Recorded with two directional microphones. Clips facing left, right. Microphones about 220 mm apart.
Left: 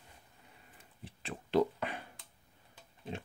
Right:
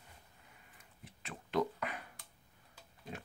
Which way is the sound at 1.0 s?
30° left (ahead or behind).